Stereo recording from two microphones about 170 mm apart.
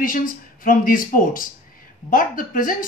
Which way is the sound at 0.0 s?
55° left (ahead or behind).